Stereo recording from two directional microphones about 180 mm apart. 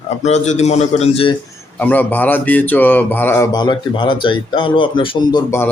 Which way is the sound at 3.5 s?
25° left (ahead or behind).